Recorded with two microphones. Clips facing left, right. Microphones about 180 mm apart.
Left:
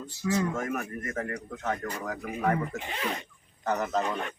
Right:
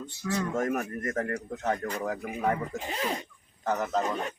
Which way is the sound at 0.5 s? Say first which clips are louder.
Right 3 dB; 40° right (ahead or behind).